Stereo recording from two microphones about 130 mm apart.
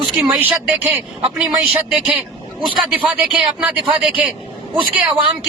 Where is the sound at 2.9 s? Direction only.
5° right (ahead or behind).